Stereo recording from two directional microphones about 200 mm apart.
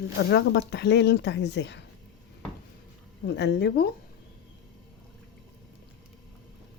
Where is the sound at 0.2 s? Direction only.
60° left (ahead or behind).